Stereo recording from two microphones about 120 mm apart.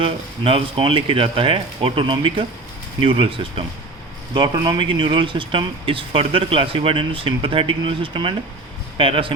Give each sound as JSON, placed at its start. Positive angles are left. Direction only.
{"t": 0.0, "sound": "speech", "side_deg": -50}
{"t": 4.4, "sound": "speech", "side_deg": -35}
{"t": 4.8, "sound": "speech", "side_deg": -45}